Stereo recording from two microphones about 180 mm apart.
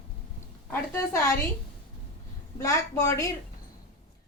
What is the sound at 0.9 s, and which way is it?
Speech, 15° left (ahead or behind).